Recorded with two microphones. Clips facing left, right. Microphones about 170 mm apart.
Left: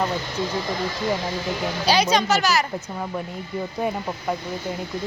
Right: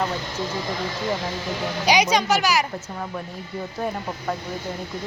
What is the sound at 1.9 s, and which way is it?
Speech, 15° right (ahead or behind).